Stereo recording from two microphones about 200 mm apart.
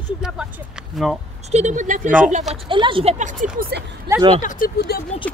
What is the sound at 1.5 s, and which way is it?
Speech, 35° right (ahead or behind).